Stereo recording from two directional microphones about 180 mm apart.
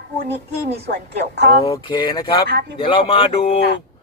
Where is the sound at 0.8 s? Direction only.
70° right (ahead or behind).